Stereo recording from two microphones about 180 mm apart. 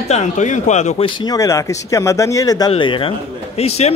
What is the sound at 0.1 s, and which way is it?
A man's voice, 40° left (ahead or behind).